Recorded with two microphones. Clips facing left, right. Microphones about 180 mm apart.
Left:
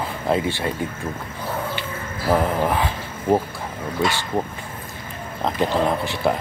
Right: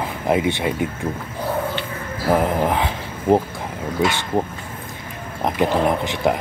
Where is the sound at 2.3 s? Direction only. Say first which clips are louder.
Right 1 dB; 15° right (ahead or behind).